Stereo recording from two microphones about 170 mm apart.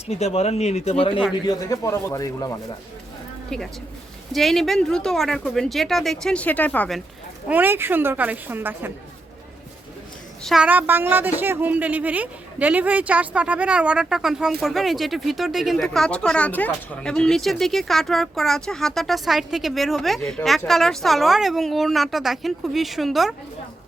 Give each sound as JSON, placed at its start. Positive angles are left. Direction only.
{"t": 0.1, "sound": "speech", "side_deg": 40}
{"t": 1.5, "sound": "a man's voice", "side_deg": 20}
{"t": 3.5, "sound": "speech", "side_deg": 5}
{"t": 7.4, "sound": "a woman's voice", "side_deg": -10}
{"t": 10.4, "sound": "speech", "side_deg": -5}